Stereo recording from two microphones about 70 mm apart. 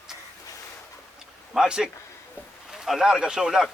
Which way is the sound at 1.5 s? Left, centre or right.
Centre.